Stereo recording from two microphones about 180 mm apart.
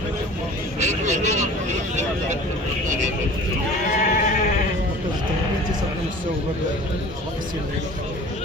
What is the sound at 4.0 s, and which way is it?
Sheep, 45° left (ahead or behind).